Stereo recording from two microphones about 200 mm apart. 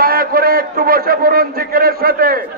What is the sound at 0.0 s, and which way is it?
A man's voice, 45° right (ahead or behind).